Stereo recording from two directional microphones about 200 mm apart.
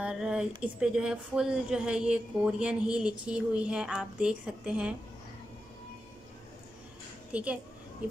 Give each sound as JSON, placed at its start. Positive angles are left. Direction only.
{"t": 0.0, "sound": "a sound", "side_deg": -5}
{"t": 0.6, "sound": "speech", "side_deg": -5}
{"t": 7.3, "sound": "speech", "side_deg": -5}